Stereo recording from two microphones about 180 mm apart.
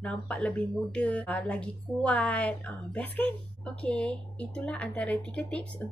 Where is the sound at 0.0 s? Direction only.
5° left (ahead or behind).